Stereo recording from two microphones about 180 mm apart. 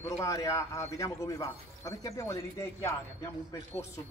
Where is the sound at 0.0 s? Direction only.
15° left (ahead or behind).